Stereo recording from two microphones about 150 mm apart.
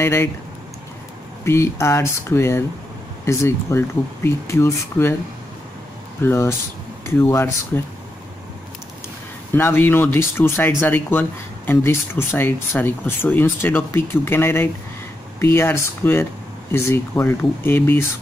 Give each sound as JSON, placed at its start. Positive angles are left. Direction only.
{"t": 0.0, "sound": "speech", "side_deg": 15}
{"t": 1.4, "sound": "speech", "side_deg": 20}
{"t": 6.2, "sound": "speech", "side_deg": 15}
{"t": 9.5, "sound": "speech", "side_deg": 15}